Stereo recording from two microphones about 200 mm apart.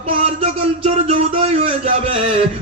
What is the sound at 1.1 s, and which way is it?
Speech, 30° right (ahead or behind).